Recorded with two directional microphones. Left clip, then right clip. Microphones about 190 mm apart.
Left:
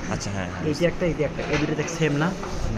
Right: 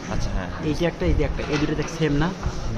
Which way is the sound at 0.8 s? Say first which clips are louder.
Left 1 dB; 30° right (ahead or behind).